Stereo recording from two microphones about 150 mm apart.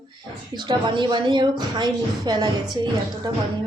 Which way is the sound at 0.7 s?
30° right (ahead or behind).